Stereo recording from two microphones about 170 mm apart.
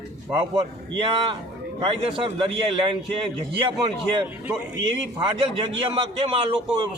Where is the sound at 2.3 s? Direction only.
30° right (ahead or behind).